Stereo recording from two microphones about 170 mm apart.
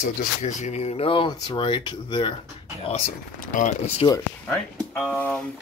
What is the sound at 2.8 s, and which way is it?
Speech, 40° left (ahead or behind).